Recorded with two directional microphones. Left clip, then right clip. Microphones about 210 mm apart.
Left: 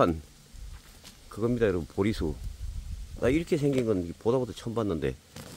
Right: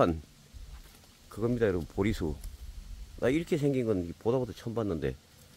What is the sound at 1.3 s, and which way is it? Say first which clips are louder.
Speech: left 2 dB; 5° left (ahead or behind).